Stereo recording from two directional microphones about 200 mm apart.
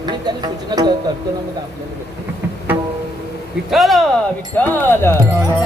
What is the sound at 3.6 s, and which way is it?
Speech, centre (ahead or behind).